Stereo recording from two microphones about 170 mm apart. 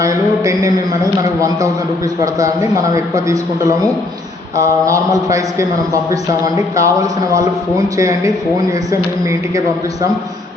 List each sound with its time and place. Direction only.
0.0 s a man's voice: 20° right (ahead or behind)